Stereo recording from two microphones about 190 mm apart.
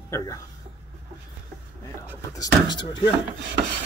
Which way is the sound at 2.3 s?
20° left (ahead or behind).